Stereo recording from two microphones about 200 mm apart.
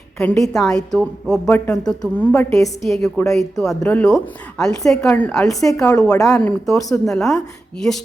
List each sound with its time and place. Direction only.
0.2 s a woman's voice: 15° left (ahead or behind)
0.4 s a woman's voice: centre (ahead or behind)
5.5 s a woman's voice: 15° left (ahead or behind)
7.0 s a woman's voice: centre (ahead or behind)